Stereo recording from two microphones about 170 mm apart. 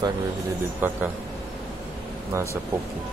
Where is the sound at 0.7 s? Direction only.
10° right (ahead or behind).